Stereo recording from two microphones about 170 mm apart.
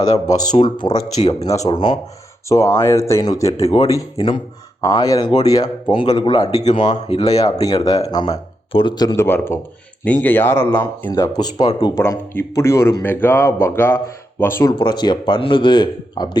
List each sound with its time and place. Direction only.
0.5 s speech: 25° left (ahead or behind)
7.3 s speech: 20° left (ahead or behind)
9.2 s speech: 15° left (ahead or behind)
11.1 s speech: 20° left (ahead or behind)
14.7 s speech: 25° left (ahead or behind)